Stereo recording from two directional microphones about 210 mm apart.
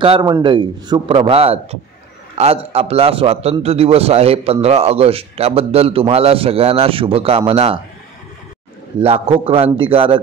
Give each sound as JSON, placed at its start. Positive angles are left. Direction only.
{"t": 0.0, "sound": "a man's voice", "side_deg": -20}
{"t": 9.0, "sound": "a man's voice", "side_deg": -25}